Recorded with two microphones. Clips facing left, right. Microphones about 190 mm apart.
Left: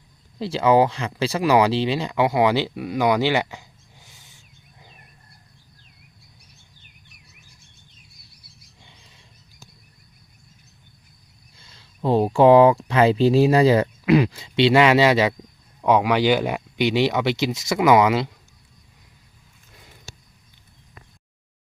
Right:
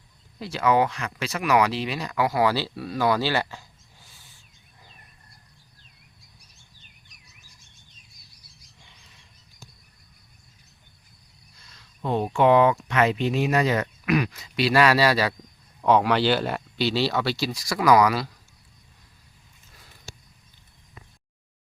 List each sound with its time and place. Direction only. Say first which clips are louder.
0.3 s speech: left 5 dB; 30° left (ahead or behind)
11.5 s speech: left 3 dB; 30° left (ahead or behind)
15.8 s speech: left 2 dB; 10° left (ahead or behind)